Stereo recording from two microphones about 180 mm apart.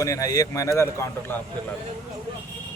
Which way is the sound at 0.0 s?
20° left (ahead or behind).